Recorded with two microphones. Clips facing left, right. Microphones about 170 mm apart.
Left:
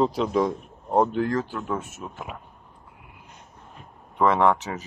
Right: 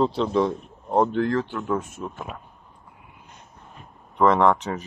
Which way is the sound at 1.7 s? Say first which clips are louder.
Right 6 dB; 20° left (ahead or behind).